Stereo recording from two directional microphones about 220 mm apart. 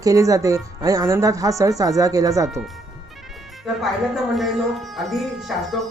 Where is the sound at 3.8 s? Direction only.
Centre (ahead or behind).